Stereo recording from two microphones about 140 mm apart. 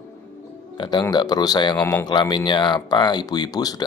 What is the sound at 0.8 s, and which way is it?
Speech, 30° left (ahead or behind).